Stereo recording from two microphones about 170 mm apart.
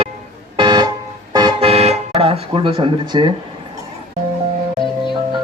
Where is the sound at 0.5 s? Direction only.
25° right (ahead or behind).